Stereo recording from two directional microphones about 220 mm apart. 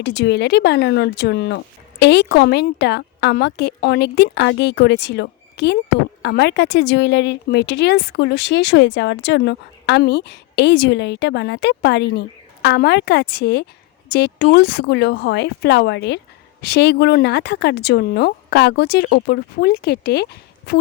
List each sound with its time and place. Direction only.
0.0 s speech: 50° left (ahead or behind)